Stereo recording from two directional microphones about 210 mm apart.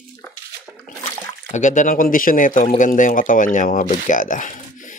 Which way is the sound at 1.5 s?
35° left (ahead or behind).